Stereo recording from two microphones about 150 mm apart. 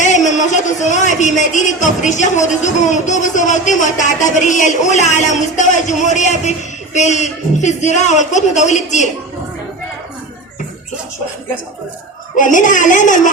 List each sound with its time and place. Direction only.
0.0 s a man's voice: 50° left (ahead or behind)
12.4 s a woman's voice: 60° left (ahead or behind)